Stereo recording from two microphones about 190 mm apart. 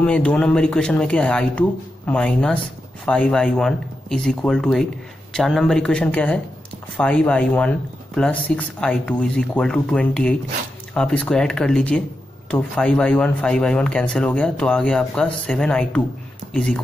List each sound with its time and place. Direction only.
0.0 s speech: 5° left (ahead or behind)